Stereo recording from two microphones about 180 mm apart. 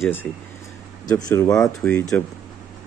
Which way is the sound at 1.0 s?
20° left (ahead or behind).